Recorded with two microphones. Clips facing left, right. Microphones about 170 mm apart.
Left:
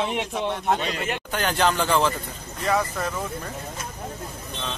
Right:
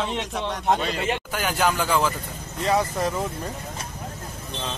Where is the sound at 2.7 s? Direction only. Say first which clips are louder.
Right 2 dB; 25° right (ahead or behind).